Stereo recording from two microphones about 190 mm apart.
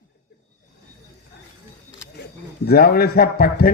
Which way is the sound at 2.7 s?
55° left (ahead or behind).